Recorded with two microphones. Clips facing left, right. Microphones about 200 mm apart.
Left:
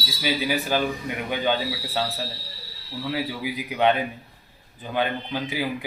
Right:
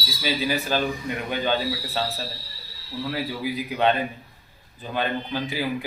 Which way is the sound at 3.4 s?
15° left (ahead or behind).